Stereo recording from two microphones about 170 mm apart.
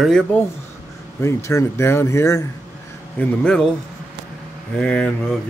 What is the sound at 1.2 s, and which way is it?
Speech, 15° left (ahead or behind).